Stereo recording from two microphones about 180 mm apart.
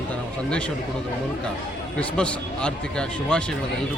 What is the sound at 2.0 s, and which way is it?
A man's voice, 5° left (ahead or behind).